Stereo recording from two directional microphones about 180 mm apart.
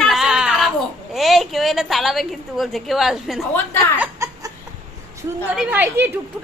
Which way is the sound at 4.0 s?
15° right (ahead or behind).